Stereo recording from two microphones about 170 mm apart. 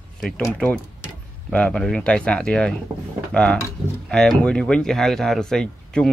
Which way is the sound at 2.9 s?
20° right (ahead or behind).